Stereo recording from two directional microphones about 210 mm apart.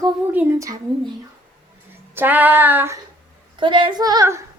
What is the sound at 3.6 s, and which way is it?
Speech, 25° right (ahead or behind).